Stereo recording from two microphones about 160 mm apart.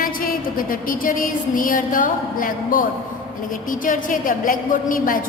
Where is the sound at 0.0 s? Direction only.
60° left (ahead or behind).